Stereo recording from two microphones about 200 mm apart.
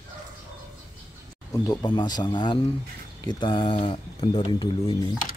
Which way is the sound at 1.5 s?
20° left (ahead or behind).